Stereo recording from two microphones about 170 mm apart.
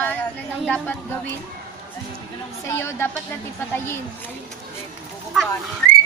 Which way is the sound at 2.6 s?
15° left (ahead or behind).